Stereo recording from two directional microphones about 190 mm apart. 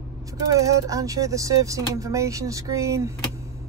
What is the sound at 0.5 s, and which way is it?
Speech, 15° right (ahead or behind).